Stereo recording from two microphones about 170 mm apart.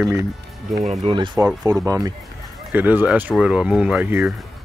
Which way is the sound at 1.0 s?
30° right (ahead or behind).